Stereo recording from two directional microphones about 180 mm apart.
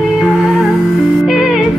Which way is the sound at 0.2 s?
Centre (ahead or behind).